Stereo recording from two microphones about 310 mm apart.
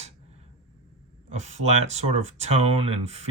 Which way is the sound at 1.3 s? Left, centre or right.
Right.